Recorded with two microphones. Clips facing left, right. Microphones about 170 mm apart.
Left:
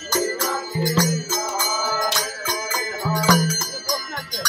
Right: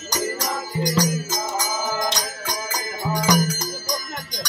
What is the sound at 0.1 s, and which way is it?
Music, 15° right (ahead or behind).